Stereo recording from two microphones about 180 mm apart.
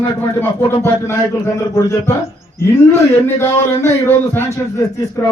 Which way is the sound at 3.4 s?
15° left (ahead or behind).